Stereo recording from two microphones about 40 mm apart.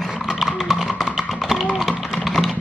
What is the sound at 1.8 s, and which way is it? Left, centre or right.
Typing, centre.